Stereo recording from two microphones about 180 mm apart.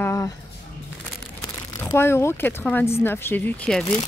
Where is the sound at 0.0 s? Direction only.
15° left (ahead or behind).